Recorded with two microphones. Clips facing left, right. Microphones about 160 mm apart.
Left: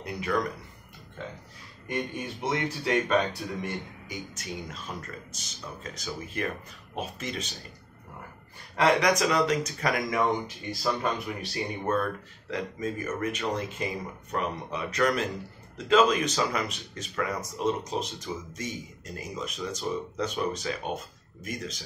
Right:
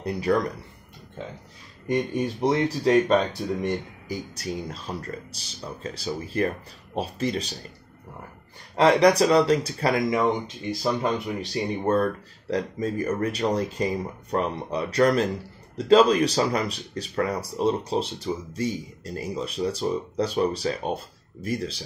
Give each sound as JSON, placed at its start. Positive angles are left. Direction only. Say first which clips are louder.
{"t": 0.0, "sound": "speech", "louder": "right 6 dB", "side_deg": -35}
{"t": 1.9, "sound": "speech", "louder": "right 8 dB", "side_deg": -35}
{"t": 8.7, "sound": "speech", "louder": "right 6 dB", "side_deg": -30}
{"t": 11.8, "sound": "speech", "louder": "right 5 dB", "side_deg": -35}